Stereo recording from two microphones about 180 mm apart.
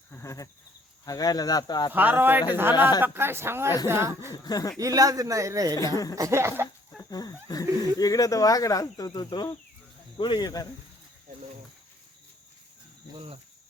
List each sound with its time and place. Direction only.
0.1 s a sound: 15° left (ahead or behind)
1.0 s speech: 20° left (ahead or behind)
1.9 s speech: 10° right (ahead or behind)
4.3 s speech: 20° left (ahead or behind)
4.8 s speech: 20° right (ahead or behind)
5.7 s speech: 20° left (ahead or behind)
6.1 s speech: 15° right (ahead or behind)
7.1 s speech: 20° left (ahead or behind)
13.1 s cricket: 30° right (ahead or behind)